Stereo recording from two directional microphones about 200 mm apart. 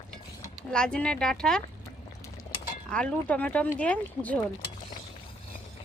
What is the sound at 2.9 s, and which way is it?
Speech, 5° left (ahead or behind).